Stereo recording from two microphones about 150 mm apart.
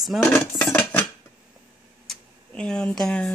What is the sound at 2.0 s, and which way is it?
Tick-tock, 5° left (ahead or behind).